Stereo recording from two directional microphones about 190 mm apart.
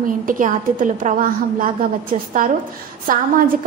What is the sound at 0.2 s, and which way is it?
A woman's voice, 45° right (ahead or behind).